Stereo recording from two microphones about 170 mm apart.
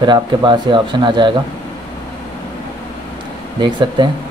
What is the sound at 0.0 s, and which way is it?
A man's voice, 25° right (ahead or behind).